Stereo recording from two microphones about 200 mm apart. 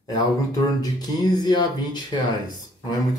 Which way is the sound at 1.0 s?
20° left (ahead or behind).